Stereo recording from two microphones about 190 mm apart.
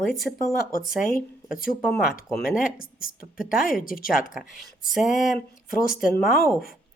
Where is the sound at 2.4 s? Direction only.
50° left (ahead or behind).